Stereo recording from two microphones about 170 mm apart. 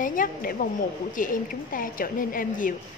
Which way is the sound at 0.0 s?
50° left (ahead or behind).